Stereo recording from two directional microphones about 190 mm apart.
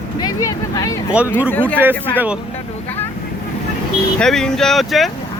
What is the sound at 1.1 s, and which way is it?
Speech, 5° right (ahead or behind).